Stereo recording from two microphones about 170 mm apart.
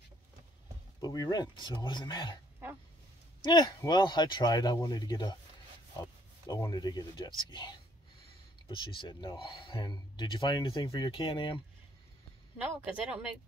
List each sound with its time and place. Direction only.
1.0 s speech: 20° left (ahead or behind)
3.4 s speech: 25° left (ahead or behind)
12.8 s speech: 5° right (ahead or behind)